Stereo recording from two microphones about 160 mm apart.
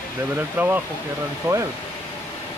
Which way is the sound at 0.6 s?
10° right (ahead or behind).